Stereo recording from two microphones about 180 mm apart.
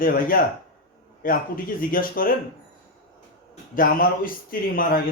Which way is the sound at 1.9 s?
50° left (ahead or behind).